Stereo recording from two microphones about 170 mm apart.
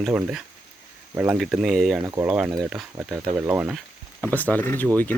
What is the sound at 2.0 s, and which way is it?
Speech, 15° right (ahead or behind).